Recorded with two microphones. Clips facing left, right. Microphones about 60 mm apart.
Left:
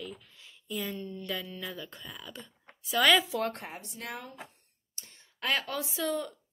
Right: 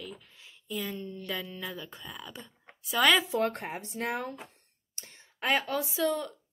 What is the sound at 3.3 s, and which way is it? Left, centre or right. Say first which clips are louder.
Speech: right 3 dB; right.